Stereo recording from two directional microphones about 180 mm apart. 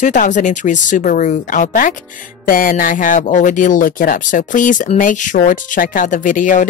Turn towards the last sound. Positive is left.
turn(degrees=45)  # may be behind; listen again after turning